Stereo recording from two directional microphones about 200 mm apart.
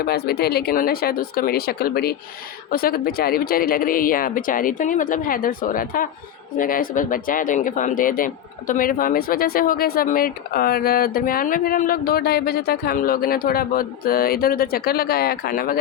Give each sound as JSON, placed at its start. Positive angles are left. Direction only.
{"t": 0.0, "sound": "speech", "side_deg": 50}